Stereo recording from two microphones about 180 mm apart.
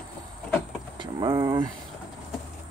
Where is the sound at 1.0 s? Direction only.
25° right (ahead or behind).